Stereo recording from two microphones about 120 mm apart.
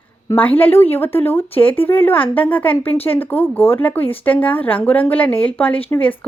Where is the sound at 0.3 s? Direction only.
15° left (ahead or behind).